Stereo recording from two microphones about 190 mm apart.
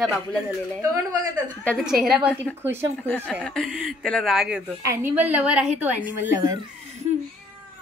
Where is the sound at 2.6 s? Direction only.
10° right (ahead or behind).